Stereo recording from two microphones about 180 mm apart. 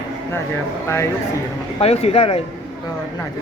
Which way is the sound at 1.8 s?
35° left (ahead or behind).